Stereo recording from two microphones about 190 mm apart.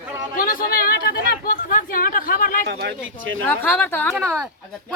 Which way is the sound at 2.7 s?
60° right (ahead or behind).